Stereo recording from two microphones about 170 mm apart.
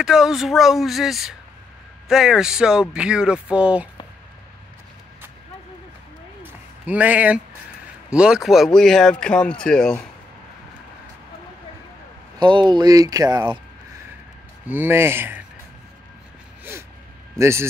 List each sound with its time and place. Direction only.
0.0 s speech: 5° right (ahead or behind)
6.4 s a sound: 10° right (ahead or behind)
8.1 s speech: 5° right (ahead or behind)
12.4 s speech: 25° right (ahead or behind)
14.7 s speech: 15° right (ahead or behind)
17.4 s speech: 15° right (ahead or behind)